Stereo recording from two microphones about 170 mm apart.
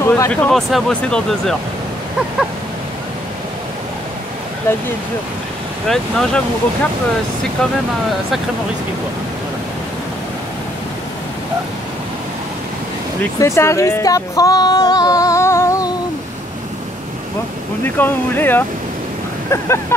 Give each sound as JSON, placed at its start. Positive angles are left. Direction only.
{"t": 0.0, "sound": "speech", "side_deg": 15}
{"t": 4.7, "sound": "speech", "side_deg": 15}
{"t": 5.9, "sound": "speech", "side_deg": 5}
{"t": 13.4, "sound": "speech", "side_deg": 15}
{"t": 17.8, "sound": "speech", "side_deg": 10}